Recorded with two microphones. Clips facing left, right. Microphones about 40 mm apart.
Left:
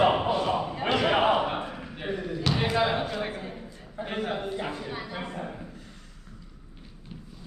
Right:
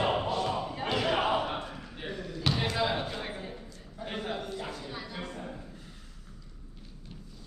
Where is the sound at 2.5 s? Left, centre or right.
Centre.